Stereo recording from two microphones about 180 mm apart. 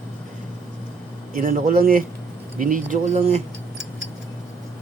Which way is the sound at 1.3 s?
50° right (ahead or behind).